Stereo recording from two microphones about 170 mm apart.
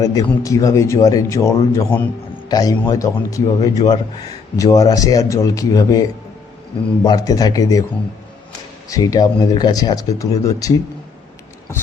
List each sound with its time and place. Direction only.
0.0 s a man's voice: 20° left (ahead or behind)
8.9 s speech: 20° left (ahead or behind)